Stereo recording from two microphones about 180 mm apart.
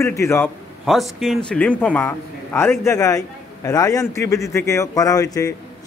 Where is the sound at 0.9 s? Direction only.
Centre (ahead or behind).